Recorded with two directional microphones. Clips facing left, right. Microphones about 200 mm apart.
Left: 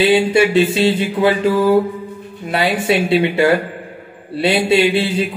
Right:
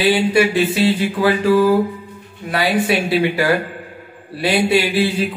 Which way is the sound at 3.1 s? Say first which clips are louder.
Left 3 dB; 25° left (ahead or behind).